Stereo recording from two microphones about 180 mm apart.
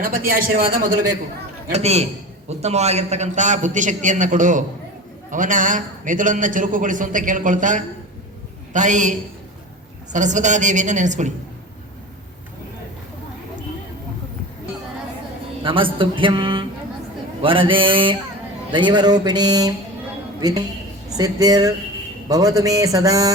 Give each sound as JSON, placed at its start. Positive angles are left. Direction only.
{"t": 0.0, "sound": "a man's voice", "side_deg": -50}
{"t": 1.7, "sound": "a man's voice", "side_deg": -35}
{"t": 15.6, "sound": "speech", "side_deg": -30}